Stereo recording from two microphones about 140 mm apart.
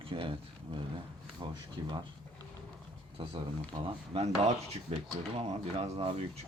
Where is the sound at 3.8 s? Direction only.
45° right (ahead or behind).